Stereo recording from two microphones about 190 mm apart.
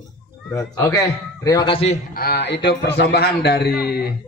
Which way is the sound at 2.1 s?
55° left (ahead or behind).